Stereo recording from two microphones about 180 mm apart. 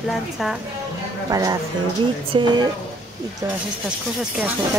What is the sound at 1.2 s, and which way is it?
Speech, 20° right (ahead or behind).